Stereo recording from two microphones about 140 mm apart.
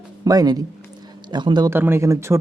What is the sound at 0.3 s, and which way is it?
Speech, 25° right (ahead or behind).